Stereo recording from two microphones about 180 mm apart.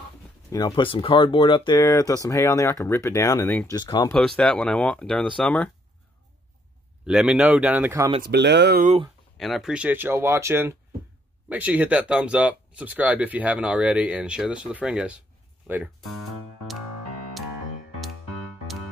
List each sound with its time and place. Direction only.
0.5 s speech: 20° left (ahead or behind)
4.1 s speech: 5° left (ahead or behind)
7.1 s speech: 5° right (ahead or behind)
8.2 s speech: 70° right (ahead or behind)
9.4 s speech: centre (ahead or behind)